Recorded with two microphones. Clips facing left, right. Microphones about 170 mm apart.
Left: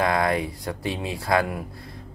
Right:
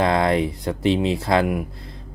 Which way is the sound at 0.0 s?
25° right (ahead or behind).